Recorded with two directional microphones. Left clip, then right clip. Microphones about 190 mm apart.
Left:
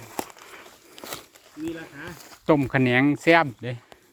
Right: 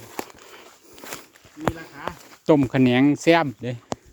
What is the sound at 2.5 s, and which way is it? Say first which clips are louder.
Speech: right 2 dB; 35° right (ahead or behind).